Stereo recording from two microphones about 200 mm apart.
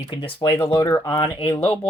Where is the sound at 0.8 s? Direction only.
10° left (ahead or behind).